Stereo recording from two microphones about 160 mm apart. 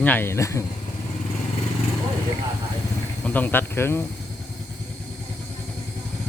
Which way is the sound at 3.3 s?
10° left (ahead or behind).